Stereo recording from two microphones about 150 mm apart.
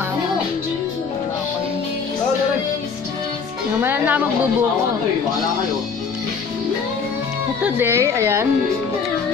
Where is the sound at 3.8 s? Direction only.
15° right (ahead or behind).